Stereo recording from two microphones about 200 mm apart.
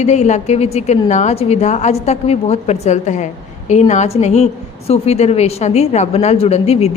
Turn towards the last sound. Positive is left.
turn(degrees=30)  # may be behind; listen again after turning